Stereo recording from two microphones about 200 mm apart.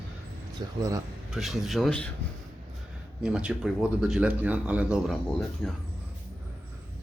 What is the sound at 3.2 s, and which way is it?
Speech, 5° right (ahead or behind).